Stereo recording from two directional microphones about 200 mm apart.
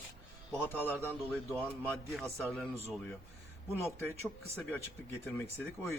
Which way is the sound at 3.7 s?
10° left (ahead or behind).